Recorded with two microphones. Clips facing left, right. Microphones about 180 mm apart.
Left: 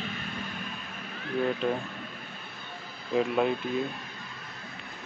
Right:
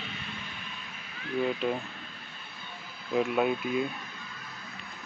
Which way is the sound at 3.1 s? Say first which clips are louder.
Left 1 dB; 5° right (ahead or behind).